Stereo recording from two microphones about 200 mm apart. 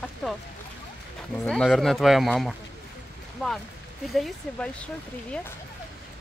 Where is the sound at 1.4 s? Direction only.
Centre (ahead or behind).